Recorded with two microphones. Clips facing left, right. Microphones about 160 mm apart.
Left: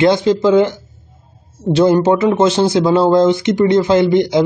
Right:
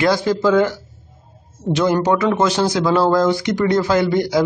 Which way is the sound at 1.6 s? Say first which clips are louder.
Left 5 dB; 30° left (ahead or behind).